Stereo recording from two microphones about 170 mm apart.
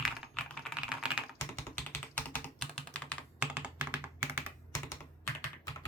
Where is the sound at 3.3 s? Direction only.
10° right (ahead or behind).